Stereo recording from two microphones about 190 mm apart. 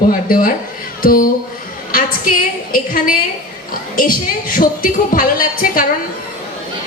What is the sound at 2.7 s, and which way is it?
Speech, 45° left (ahead or behind).